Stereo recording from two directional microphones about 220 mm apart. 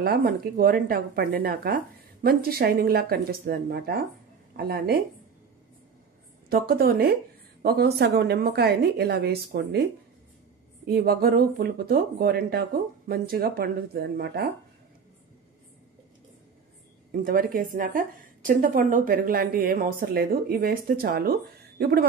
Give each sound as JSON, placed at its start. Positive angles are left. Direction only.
{"t": 0.0, "sound": "speech", "side_deg": -45}
{"t": 6.5, "sound": "speech", "side_deg": -45}
{"t": 10.9, "sound": "speech", "side_deg": -45}
{"t": 17.1, "sound": "a woman's voice", "side_deg": -40}